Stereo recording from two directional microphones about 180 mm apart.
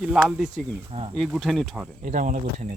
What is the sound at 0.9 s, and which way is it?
Speech, 35° right (ahead or behind).